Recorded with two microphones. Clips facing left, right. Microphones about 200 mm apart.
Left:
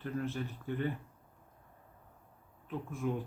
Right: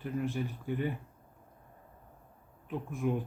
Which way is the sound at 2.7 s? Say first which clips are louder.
Right 3 dB; 15° right (ahead or behind).